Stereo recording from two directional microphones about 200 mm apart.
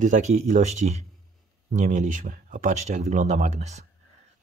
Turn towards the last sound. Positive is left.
turn(degrees=-35)  # may be behind; listen again after turning